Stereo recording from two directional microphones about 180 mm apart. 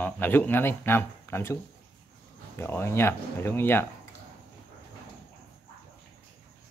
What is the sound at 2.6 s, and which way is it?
Speech, 10° left (ahead or behind).